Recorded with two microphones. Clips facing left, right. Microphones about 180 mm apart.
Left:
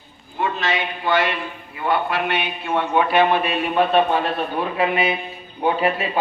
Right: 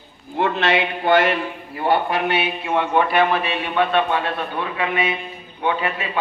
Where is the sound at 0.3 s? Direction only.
70° right (ahead or behind); by 1.4 s 50° right (ahead or behind).